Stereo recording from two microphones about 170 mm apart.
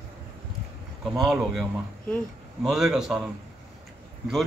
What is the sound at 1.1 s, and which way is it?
A man's voice, centre (ahead or behind).